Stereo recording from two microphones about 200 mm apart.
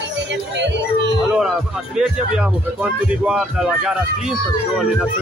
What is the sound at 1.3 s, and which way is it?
A man's voice, 5° right (ahead or behind).